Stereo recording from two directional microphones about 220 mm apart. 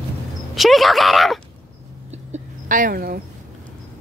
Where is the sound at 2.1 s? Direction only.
35° right (ahead or behind).